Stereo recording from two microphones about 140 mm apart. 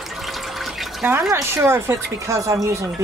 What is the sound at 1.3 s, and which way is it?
Speech, 20° right (ahead or behind).